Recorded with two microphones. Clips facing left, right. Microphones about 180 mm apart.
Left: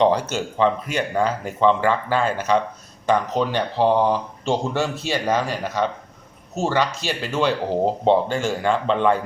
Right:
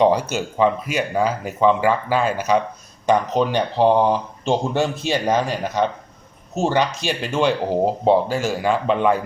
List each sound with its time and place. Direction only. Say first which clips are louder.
0.0 s speech: right 1 dB; 10° right (ahead or behind)